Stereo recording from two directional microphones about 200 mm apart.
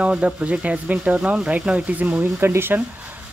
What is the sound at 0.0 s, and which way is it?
Speech, 5° right (ahead or behind).